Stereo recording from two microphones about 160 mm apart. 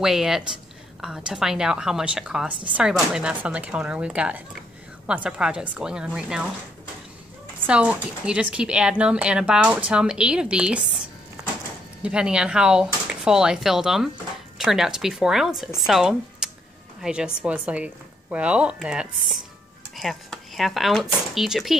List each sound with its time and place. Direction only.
0.0 s a woman's voice: centre (ahead or behind)
7.6 s a woman's voice: 10° right (ahead or behind)